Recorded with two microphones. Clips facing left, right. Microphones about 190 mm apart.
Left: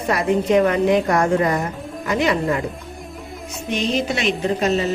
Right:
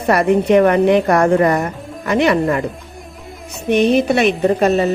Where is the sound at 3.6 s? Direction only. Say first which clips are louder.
Right 8 dB; 60° right (ahead or behind).